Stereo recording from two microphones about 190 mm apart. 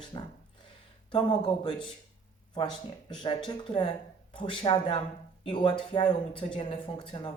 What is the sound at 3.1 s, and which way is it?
Speech, 25° left (ahead or behind).